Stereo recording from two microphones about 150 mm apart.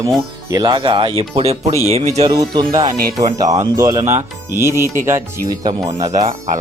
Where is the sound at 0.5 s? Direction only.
30° right (ahead or behind); by 2.3 s 45° right (ahead or behind).